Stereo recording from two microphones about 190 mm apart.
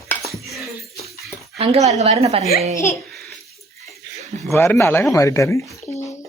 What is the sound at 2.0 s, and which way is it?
Speech, 35° right (ahead or behind).